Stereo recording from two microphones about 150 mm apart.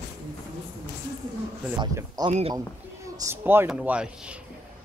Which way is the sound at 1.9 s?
25° right (ahead or behind).